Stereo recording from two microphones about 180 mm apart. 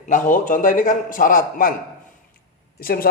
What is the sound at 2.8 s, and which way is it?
Speech, 55° left (ahead or behind).